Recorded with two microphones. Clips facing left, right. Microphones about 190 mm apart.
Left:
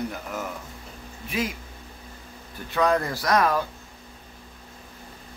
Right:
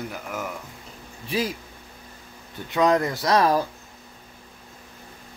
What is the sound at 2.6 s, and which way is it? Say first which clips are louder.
Speech: right 2 dB; 20° right (ahead or behind).